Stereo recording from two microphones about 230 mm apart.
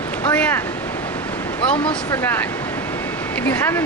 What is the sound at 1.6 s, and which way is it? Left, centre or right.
Speech, left.